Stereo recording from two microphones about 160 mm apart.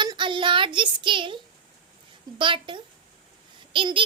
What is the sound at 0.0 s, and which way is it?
Child singing, 30° right (ahead or behind).